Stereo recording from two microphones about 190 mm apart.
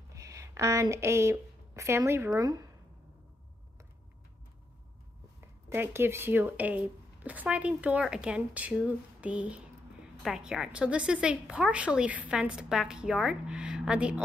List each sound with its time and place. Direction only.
0.1 s speech: 15° right (ahead or behind)
5.4 s speech: 10° right (ahead or behind)